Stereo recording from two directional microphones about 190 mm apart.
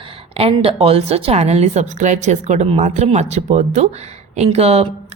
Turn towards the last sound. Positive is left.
turn(degrees=-35)  # may be behind; listen again after turning